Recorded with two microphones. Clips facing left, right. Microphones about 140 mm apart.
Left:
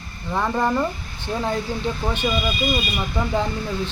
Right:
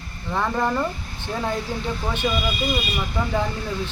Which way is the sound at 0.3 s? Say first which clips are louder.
Left 1 dB; 15° left (ahead or behind).